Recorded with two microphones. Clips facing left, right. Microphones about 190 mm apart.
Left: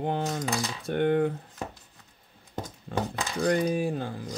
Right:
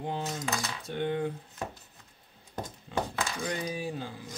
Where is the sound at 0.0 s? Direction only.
60° left (ahead or behind).